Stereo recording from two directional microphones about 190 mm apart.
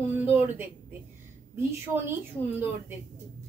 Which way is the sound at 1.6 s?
10° right (ahead or behind).